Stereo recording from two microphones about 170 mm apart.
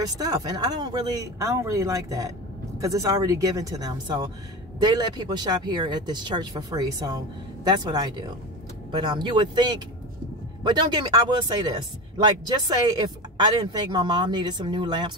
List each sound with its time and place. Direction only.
0.0 s speech: 20° right (ahead or behind)